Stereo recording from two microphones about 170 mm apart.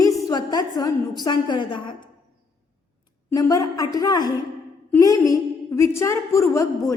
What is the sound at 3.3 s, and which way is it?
A woman's voice, 20° left (ahead or behind).